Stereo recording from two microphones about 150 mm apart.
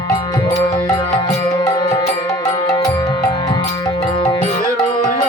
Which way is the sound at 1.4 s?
30° left (ahead or behind).